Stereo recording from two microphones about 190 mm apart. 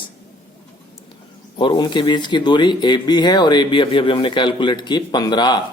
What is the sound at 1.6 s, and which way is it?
Speech, 25° left (ahead or behind).